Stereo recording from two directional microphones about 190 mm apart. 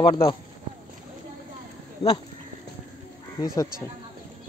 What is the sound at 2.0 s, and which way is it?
Speech, 30° left (ahead or behind).